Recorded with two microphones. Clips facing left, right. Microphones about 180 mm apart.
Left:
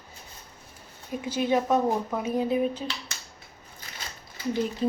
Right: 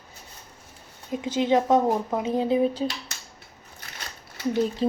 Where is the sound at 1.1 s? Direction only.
20° right (ahead or behind).